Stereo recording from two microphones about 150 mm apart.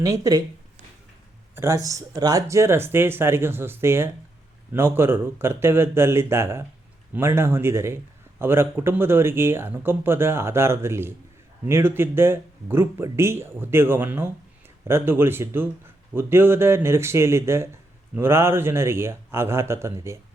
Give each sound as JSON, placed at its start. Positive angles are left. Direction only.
{"t": 0.0, "sound": "speech", "side_deg": -20}
{"t": 1.5, "sound": "speech", "side_deg": -20}